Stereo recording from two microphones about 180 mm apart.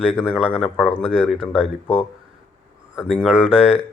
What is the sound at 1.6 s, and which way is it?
Speech, 30° left (ahead or behind).